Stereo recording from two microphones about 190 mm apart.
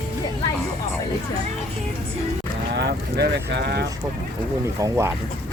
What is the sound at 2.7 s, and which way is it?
Speech, 55° right (ahead or behind).